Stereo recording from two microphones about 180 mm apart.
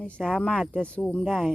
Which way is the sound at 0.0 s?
5° left (ahead or behind).